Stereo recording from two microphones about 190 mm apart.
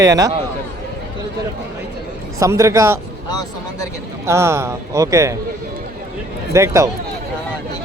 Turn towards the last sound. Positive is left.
turn(degrees=-15)  # may be behind; listen again after turning